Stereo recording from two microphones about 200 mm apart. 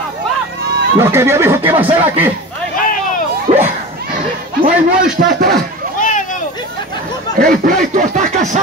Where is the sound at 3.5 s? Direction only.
35° right (ahead or behind).